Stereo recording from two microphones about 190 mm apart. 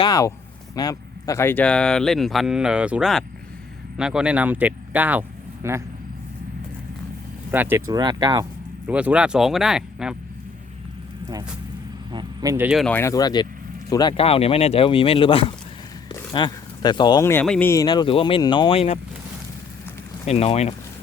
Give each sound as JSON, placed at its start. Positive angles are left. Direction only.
{"t": 0.0, "sound": "speech", "side_deg": 20}
{"t": 7.5, "sound": "speech", "side_deg": -10}
{"t": 8.9, "sound": "speech", "side_deg": -5}
{"t": 12.1, "sound": "speech", "side_deg": -20}
{"t": 12.8, "sound": "speech", "side_deg": 10}
{"t": 20.2, "sound": "speech", "side_deg": 30}